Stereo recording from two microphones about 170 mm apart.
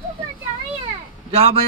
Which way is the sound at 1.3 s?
35° right (ahead or behind).